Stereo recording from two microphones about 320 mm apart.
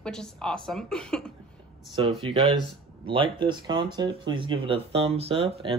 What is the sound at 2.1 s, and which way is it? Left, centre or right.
Speech, centre.